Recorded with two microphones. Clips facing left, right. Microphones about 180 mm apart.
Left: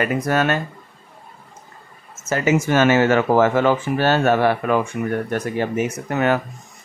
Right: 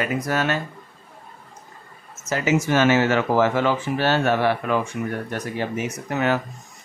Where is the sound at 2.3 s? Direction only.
50° left (ahead or behind).